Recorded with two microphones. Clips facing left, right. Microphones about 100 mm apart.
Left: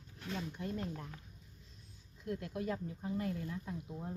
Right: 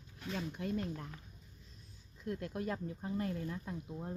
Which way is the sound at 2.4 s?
45° right (ahead or behind).